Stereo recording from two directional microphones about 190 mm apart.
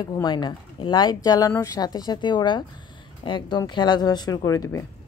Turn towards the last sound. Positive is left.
turn(degrees=15)  # may be behind; listen again after turning